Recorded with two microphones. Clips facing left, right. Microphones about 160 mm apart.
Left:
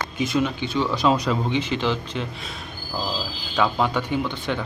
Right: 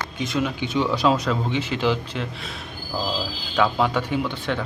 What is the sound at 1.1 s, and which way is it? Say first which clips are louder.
A man's voice: left 1 dB; centre (ahead or behind).